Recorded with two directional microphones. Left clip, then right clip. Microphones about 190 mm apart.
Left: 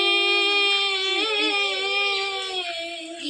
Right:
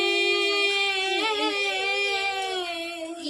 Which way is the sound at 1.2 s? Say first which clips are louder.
Left 3 dB; 25° right (ahead or behind).